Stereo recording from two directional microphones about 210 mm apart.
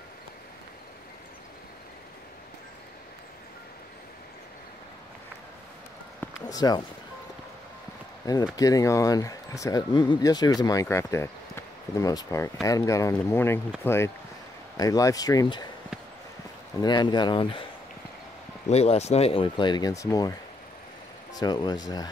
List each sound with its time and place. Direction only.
6.5 s speech: 20° left (ahead or behind)
8.2 s speech: 20° left (ahead or behind)
16.8 s speech: 20° left (ahead or behind)
18.7 s speech: 30° left (ahead or behind)
21.4 s speech: 20° left (ahead or behind)